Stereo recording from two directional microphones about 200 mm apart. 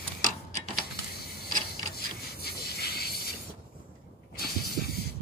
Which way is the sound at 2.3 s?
50° left (ahead or behind).